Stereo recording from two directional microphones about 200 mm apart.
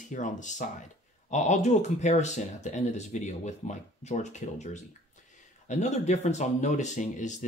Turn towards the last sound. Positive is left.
turn(degrees=35)  # may be behind; listen again after turning